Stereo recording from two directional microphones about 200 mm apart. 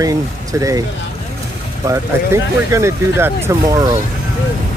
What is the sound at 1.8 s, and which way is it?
Speech, 15° right (ahead or behind).